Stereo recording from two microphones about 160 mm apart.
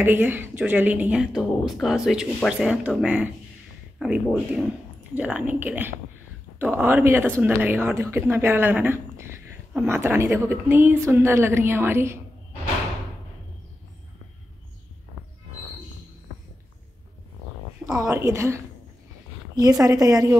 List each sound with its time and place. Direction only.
0.0 s a woman's voice: 10° right (ahead or behind)
17.8 s a woman's voice: 15° right (ahead or behind)